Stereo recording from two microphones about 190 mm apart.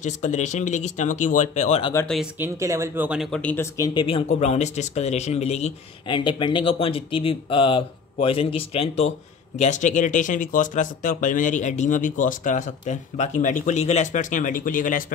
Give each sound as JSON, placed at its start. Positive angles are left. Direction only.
{"t": 0.0, "sound": "speech", "side_deg": 40}
{"t": 2.3, "sound": "speech", "side_deg": -15}